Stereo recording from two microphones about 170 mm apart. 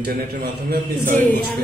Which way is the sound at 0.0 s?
65° right (ahead or behind).